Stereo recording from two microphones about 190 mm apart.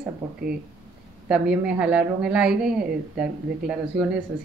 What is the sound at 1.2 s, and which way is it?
Speech, 5° right (ahead or behind).